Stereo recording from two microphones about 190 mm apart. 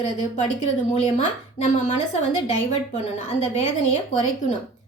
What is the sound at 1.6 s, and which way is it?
A woman's voice, 40° left (ahead or behind).